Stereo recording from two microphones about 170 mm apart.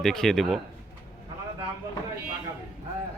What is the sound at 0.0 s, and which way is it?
Speech, 5° left (ahead or behind).